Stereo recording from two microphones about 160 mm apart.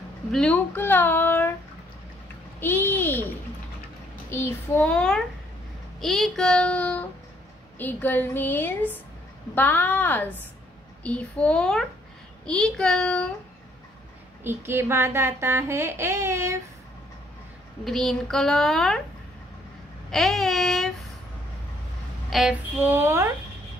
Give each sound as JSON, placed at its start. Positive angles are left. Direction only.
{"t": 0.3, "sound": "speech", "side_deg": 5}
{"t": 2.6, "sound": "speech", "side_deg": 10}
{"t": 4.3, "sound": "a woman's voice", "side_deg": 15}
{"t": 14.4, "sound": "speech", "side_deg": -15}
{"t": 17.8, "sound": "a woman's voice", "side_deg": 0}
{"t": 20.1, "sound": "a sound", "side_deg": 0}
{"t": 22.3, "sound": "speech", "side_deg": -5}